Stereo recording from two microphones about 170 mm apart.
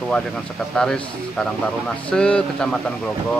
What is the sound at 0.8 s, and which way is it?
Speech, 5° left (ahead or behind).